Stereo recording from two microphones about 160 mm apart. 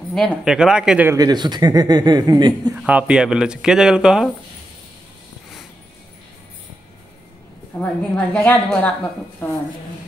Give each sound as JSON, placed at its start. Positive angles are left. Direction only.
{"t": 0.1, "sound": "speech", "side_deg": 0}
{"t": 1.1, "sound": "speech", "side_deg": -25}
{"t": 2.7, "sound": "speech", "side_deg": -10}
{"t": 7.7, "sound": "a woman's voice", "side_deg": 10}